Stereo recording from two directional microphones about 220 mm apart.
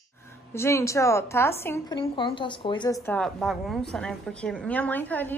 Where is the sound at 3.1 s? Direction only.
5° left (ahead or behind).